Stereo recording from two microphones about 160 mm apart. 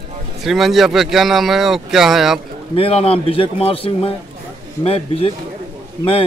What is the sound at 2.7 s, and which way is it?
Speech, 35° left (ahead or behind).